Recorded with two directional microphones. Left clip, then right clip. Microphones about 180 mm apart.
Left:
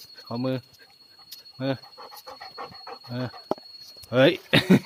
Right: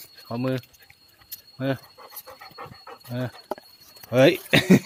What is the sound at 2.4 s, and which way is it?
Pant, 20° left (ahead or behind).